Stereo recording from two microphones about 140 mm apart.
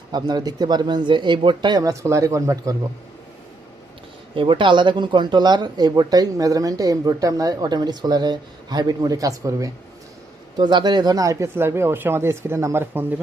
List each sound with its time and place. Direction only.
0.1 s speech: 30° right (ahead or behind)
4.4 s speech: 35° right (ahead or behind); by 13.2 s 15° right (ahead or behind)